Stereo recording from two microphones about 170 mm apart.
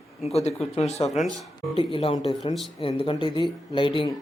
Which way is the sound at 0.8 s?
40° left (ahead or behind).